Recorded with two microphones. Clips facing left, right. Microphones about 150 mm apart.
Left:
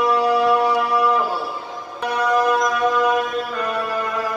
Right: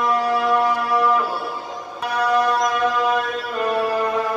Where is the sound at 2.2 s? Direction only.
Centre (ahead or behind).